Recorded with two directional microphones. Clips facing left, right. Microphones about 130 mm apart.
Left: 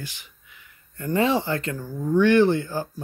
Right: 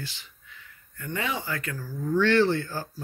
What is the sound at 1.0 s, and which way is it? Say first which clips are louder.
Speech: left 10 dB; 30° left (ahead or behind).